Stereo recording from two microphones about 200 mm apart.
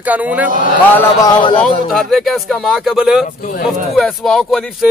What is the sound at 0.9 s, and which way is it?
Speech, 20° left (ahead or behind).